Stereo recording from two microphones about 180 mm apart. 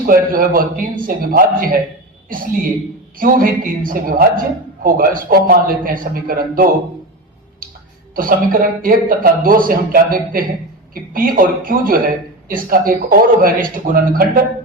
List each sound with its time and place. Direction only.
0.0 s a man's voice: 50° right (ahead or behind)
8.1 s a man's voice: 50° right (ahead or behind)